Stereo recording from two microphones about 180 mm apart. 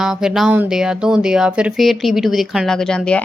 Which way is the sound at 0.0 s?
5° right (ahead or behind).